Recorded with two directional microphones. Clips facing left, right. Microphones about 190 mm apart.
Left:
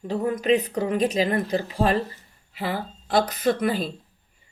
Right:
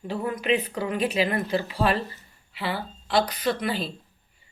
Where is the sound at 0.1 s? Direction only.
40° left (ahead or behind).